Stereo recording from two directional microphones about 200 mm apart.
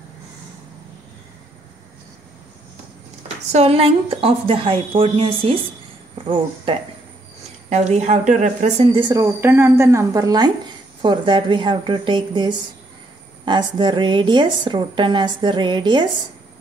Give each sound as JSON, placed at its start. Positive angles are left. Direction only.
{"t": 3.5, "sound": "speech", "side_deg": -30}